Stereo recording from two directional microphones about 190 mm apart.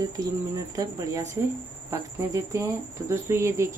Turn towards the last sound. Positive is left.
turn(degrees=-15)  # may be behind; listen again after turning